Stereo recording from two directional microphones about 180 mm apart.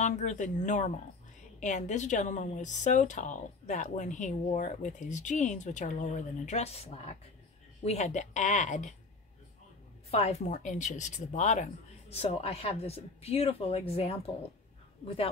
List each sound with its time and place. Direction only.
0.0 s speech: 40° left (ahead or behind)
10.1 s speech: 40° left (ahead or behind)